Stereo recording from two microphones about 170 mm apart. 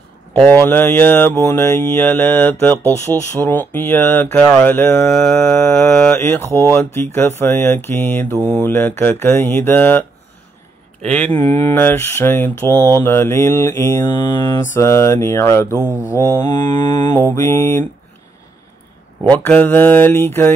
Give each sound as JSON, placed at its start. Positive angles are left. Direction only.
{"t": 0.6, "sound": "mantra", "side_deg": 10}
{"t": 11.0, "sound": "speech", "side_deg": -40}
{"t": 11.2, "sound": "mantra", "side_deg": 15}
{"t": 19.3, "sound": "mantra", "side_deg": 10}